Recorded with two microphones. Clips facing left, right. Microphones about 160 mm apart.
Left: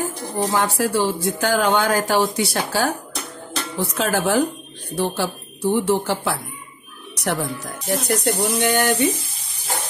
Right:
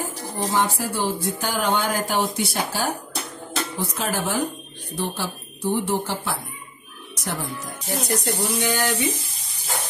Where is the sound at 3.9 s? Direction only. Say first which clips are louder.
Left 7 dB; 90° left.